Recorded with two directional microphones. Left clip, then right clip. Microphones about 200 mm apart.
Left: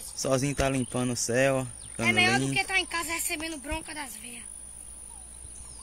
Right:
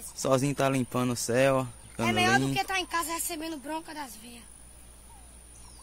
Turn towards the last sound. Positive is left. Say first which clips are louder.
# even
turn(degrees=-30)  # may be behind; listen again after turning